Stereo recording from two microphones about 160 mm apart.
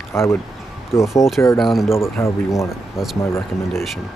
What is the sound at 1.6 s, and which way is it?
Speech, centre (ahead or behind).